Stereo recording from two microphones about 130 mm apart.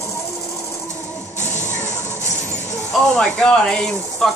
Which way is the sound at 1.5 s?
65° left (ahead or behind).